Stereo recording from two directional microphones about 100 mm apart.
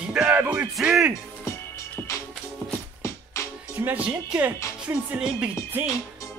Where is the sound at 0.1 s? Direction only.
15° right (ahead or behind).